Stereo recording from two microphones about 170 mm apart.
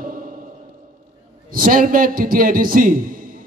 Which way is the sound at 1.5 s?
55° right (ahead or behind).